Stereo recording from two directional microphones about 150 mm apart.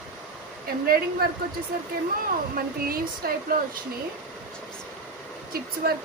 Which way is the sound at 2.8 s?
80° right.